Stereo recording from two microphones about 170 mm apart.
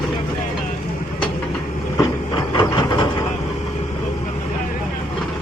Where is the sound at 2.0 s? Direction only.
20° left (ahead or behind).